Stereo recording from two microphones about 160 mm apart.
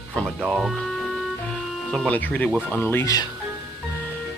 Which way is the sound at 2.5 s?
10° right (ahead or behind).